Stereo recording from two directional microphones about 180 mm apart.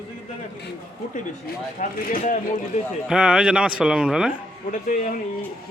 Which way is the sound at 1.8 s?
50° left (ahead or behind).